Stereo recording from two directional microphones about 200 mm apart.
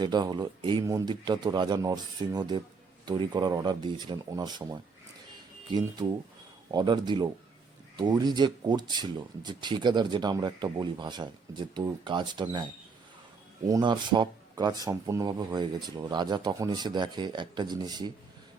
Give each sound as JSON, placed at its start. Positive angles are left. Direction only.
{"t": 0.0, "sound": "speech", "side_deg": -20}
{"t": 6.7, "sound": "speech", "side_deg": -20}
{"t": 13.7, "sound": "speech", "side_deg": -20}